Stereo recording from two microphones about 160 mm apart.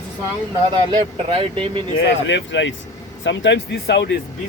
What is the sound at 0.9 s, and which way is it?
Speech, 35° right (ahead or behind).